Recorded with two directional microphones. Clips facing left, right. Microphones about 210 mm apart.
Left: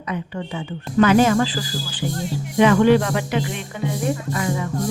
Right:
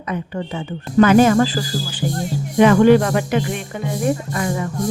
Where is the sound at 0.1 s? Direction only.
45° right (ahead or behind).